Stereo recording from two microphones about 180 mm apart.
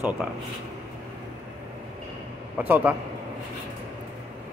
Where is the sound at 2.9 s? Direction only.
10° right (ahead or behind).